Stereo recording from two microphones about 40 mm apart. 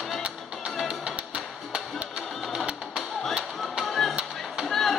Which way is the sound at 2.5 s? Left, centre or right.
Centre.